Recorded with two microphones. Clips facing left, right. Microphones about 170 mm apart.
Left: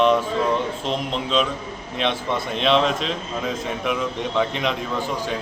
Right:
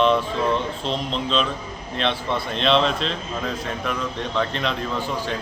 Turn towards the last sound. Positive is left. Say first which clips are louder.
# left 2 dB
turn(degrees=15)  # may be behind; listen again after turning